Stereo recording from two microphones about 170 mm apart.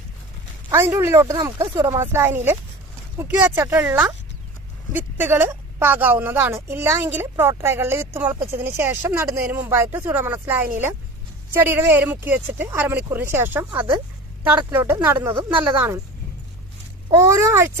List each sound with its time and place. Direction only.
0.7 s a woman's voice: 15° right (ahead or behind)
17.1 s a woman's voice: 15° right (ahead or behind)